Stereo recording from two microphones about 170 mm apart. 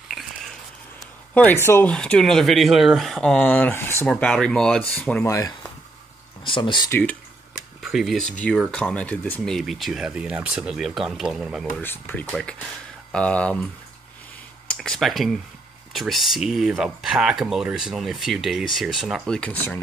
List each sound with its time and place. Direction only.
1.3 s speech: 10° left (ahead or behind)
5.2 s speech: 20° left (ahead or behind)
6.4 s speech: 30° left (ahead or behind)
6.9 s speech: 10° left (ahead or behind)
11.8 s speech: 10° left (ahead or behind)
14.7 s speech: 5° left (ahead or behind)